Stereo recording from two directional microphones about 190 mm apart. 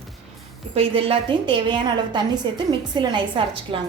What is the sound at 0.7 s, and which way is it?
A woman's voice, 30° right (ahead or behind).